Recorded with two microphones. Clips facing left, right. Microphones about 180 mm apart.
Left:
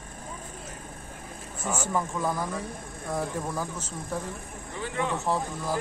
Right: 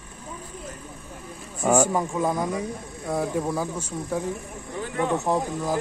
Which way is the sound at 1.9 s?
20° right (ahead or behind).